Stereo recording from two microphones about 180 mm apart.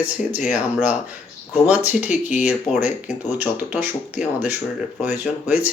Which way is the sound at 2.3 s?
40° left (ahead or behind).